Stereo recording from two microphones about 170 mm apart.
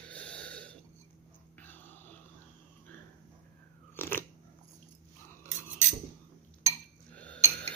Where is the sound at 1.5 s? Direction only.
10° left (ahead or behind).